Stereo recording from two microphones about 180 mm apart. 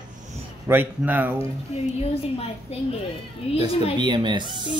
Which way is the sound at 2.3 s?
35° left (ahead or behind).